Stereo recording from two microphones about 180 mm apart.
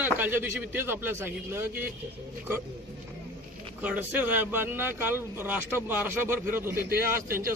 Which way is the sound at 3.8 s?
10° right (ahead or behind).